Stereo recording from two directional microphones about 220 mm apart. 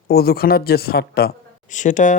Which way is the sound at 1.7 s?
35° left (ahead or behind).